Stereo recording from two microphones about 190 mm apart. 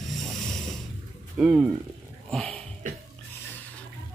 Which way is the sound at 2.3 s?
5° left (ahead or behind).